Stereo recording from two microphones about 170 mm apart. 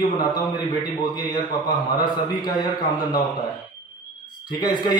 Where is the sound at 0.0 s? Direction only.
25° left (ahead or behind).